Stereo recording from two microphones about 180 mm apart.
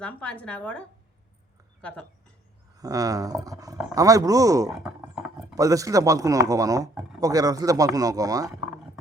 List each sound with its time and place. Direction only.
0.0 s a woman's voice: 5° left (ahead or behind)
2.7 s speech: 20° right (ahead or behind)
4.7 s a sound: 5° right (ahead or behind)
5.5 s speech: 20° right (ahead or behind)